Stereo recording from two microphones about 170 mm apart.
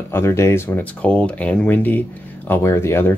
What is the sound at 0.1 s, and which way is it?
Speech, 15° left (ahead or behind).